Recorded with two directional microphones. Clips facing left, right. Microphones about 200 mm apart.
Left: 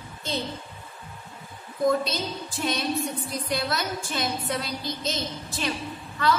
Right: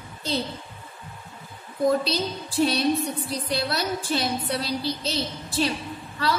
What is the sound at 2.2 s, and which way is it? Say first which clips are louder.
A woman's voice: right 7 dB; 35° right (ahead or behind).